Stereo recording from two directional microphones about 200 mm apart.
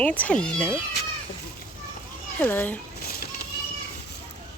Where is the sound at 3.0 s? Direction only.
50° left (ahead or behind).